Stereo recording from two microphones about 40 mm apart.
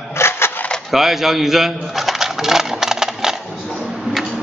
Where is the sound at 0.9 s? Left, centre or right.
Centre.